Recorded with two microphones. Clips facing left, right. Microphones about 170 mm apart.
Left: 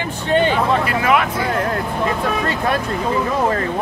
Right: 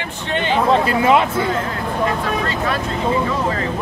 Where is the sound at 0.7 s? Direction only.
25° right (ahead or behind).